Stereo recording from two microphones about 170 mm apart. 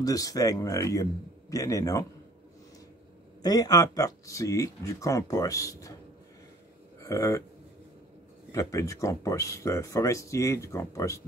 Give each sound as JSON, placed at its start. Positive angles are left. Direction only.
{"t": 0.0, "sound": "speech", "side_deg": 20}
{"t": 3.4, "sound": "speech", "side_deg": 20}
{"t": 7.0, "sound": "speech", "side_deg": 20}
{"t": 8.5, "sound": "speech", "side_deg": 20}